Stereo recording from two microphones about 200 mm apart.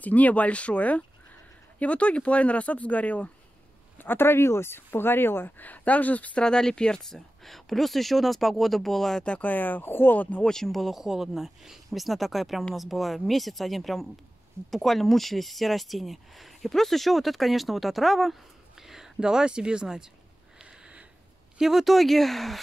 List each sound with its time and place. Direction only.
0.0 s speech: 10° left (ahead or behind)
20.5 s a sound: 5° right (ahead or behind)
21.5 s speech: centre (ahead or behind)